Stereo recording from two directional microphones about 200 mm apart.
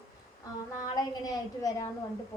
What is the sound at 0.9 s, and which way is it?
Speech, 20° left (ahead or behind).